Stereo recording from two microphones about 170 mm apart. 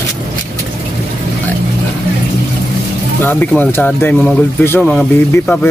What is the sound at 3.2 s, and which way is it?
Speech, 10° left (ahead or behind).